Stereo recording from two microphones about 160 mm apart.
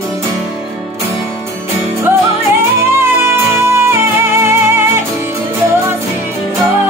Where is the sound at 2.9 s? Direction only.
15° right (ahead or behind).